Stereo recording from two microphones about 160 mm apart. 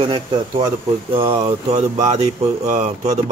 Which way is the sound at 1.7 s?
45° right (ahead or behind).